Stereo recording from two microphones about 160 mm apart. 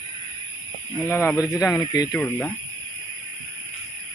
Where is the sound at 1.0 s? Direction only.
15° left (ahead or behind).